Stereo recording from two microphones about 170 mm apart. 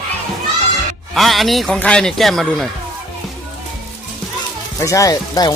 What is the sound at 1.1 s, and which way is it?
Speech, centre (ahead or behind).